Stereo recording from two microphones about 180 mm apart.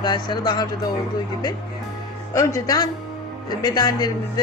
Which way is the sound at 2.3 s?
20° left (ahead or behind).